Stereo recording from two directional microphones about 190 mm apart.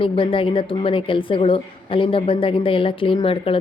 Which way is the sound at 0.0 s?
25° left (ahead or behind).